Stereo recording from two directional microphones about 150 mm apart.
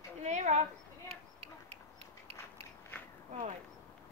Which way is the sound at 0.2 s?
50° right (ahead or behind).